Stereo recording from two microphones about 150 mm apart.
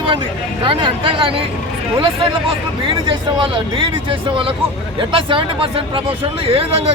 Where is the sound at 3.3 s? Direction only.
35° right (ahead or behind).